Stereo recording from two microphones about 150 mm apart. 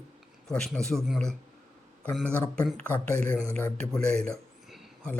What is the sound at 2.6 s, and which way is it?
A man's voice, 10° left (ahead or behind).